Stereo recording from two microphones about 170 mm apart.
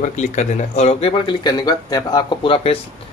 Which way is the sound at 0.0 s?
45° left (ahead or behind).